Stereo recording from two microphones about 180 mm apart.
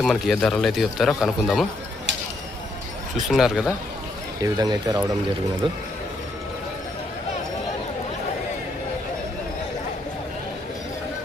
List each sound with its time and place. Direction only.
0.0 s speech: centre (ahead or behind)
2.1 s a sound: 90° right
3.2 s speech: centre (ahead or behind)
4.4 s speech: 20° right (ahead or behind)